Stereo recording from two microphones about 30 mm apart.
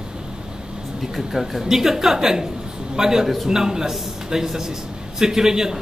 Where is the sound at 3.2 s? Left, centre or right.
Centre.